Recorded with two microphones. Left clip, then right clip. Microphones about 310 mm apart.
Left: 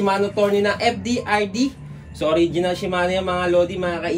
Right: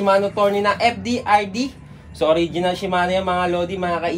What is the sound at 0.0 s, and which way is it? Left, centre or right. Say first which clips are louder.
Speech: right 2 dB; centre.